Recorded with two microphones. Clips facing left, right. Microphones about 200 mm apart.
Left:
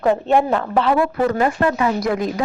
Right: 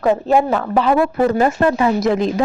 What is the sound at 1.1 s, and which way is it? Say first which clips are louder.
Speech: right 3 dB; 25° right (ahead or behind).